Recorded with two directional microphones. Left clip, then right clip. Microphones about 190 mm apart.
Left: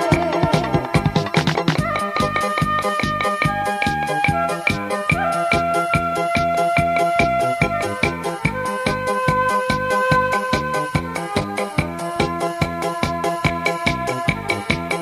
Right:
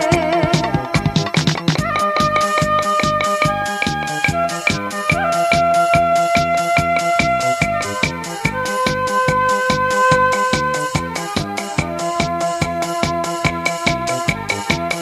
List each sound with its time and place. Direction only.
0.1 s music: 25° left (ahead or behind)
8.8 s music: 30° left (ahead or behind)
13.4 s music: 30° left (ahead or behind)